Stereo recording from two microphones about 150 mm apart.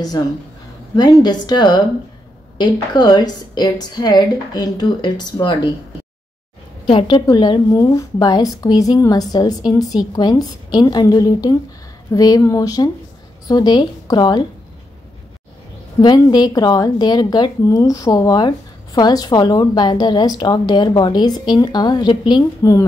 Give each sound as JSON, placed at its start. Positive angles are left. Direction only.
{"t": 0.9, "sound": "a woman's voice", "side_deg": 30}
{"t": 6.9, "sound": "a woman's voice", "side_deg": 40}
{"t": 16.0, "sound": "a woman's voice", "side_deg": 30}